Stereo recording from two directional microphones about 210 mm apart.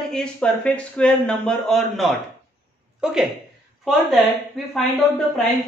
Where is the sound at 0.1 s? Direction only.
5° left (ahead or behind).